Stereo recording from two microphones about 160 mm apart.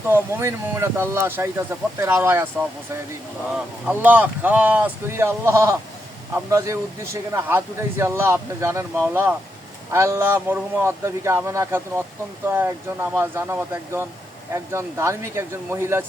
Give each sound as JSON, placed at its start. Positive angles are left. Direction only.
{"t": 0.1, "sound": "a man's voice", "side_deg": -15}